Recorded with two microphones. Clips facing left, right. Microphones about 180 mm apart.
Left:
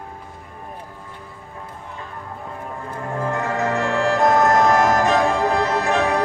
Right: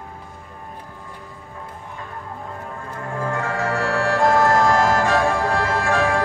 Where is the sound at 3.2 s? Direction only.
20° left (ahead or behind).